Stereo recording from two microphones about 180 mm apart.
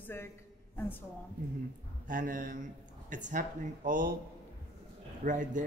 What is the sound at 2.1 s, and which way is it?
A man's voice, 50° right (ahead or behind).